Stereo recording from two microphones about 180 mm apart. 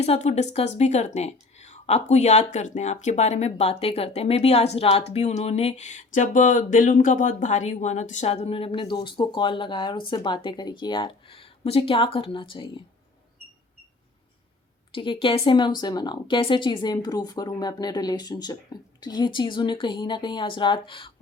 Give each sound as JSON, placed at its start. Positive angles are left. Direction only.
{"t": 0.0, "sound": "speech", "side_deg": 35}
{"t": 14.9, "sound": "speech", "side_deg": 30}